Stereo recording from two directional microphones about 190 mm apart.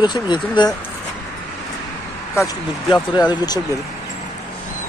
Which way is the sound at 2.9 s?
25° left (ahead or behind).